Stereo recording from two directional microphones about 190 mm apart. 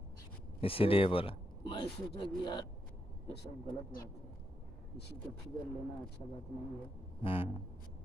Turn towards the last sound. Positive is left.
turn(degrees=30)  # may be behind; listen again after turning